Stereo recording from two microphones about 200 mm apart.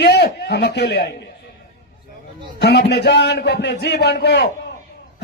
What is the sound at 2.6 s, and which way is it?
A man's voice, 55° left (ahead or behind).